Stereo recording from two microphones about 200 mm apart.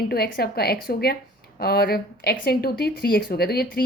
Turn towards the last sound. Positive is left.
turn(degrees=50)  # may be behind; listen again after turning